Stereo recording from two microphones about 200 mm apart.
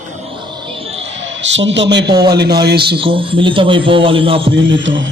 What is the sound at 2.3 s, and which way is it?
Speech, 55° right (ahead or behind).